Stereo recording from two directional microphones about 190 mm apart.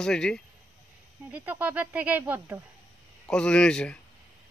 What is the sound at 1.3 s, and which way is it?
Speech, 10° right (ahead or behind).